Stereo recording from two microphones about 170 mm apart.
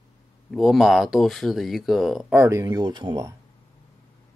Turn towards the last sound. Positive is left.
turn(degrees=-25)  # may be behind; listen again after turning